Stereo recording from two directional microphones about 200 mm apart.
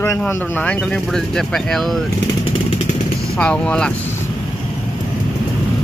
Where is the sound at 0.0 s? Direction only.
10° left (ahead or behind).